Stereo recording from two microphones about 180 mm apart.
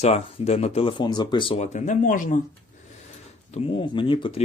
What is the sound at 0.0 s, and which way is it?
Speech, 35° left (ahead or behind).